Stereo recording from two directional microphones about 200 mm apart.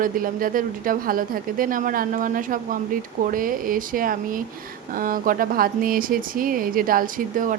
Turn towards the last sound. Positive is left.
turn(degrees=-45)  # may be behind; listen again after turning